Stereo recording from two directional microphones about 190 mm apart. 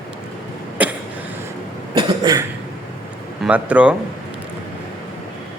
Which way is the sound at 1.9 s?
20° right (ahead or behind).